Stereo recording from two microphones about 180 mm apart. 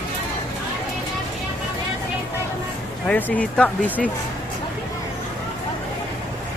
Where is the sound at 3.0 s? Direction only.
5° left (ahead or behind).